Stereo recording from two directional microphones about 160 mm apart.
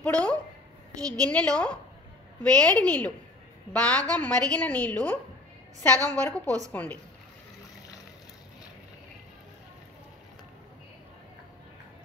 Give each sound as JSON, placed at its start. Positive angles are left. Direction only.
{"t": 0.0, "sound": "a woman's voice", "side_deg": 5}
{"t": 1.0, "sound": "a woman's voice", "side_deg": -20}
{"t": 1.3, "sound": "a woman's voice", "side_deg": 5}
{"t": 6.4, "sound": "a woman's voice", "side_deg": -20}
{"t": 6.7, "sound": "a woman's voice", "side_deg": 10}